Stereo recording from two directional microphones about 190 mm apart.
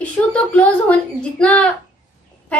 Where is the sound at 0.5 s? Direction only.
5° left (ahead or behind).